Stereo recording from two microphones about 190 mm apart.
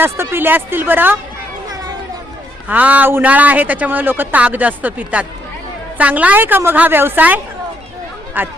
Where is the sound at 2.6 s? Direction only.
10° right (ahead or behind).